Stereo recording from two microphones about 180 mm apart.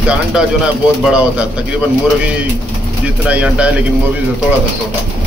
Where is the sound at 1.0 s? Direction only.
5° right (ahead or behind).